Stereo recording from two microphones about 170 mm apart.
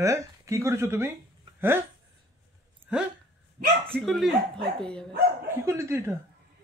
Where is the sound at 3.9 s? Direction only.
Centre (ahead or behind).